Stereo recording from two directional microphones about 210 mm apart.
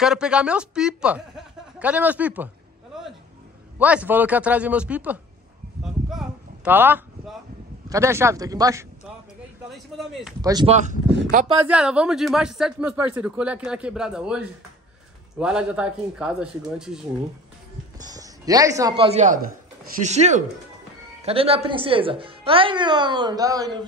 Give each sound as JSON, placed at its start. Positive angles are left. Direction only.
{"t": 0.0, "sound": "speech", "side_deg": -5}
{"t": 3.7, "sound": "speech", "side_deg": -5}
{"t": 5.8, "sound": "a sound", "side_deg": 0}
{"t": 7.9, "sound": "speech", "side_deg": -15}
{"t": 9.7, "sound": "speech", "side_deg": 0}
{"t": 10.4, "sound": "a woman's voice", "side_deg": -20}
{"t": 10.7, "sound": "speech", "side_deg": -35}
{"t": 11.1, "sound": "speech", "side_deg": -55}
{"t": 11.6, "sound": "speech", "side_deg": -5}
{"t": 18.1, "sound": "a woman's voice", "side_deg": -15}